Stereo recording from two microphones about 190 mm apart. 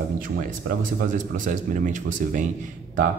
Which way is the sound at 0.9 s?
45° right (ahead or behind).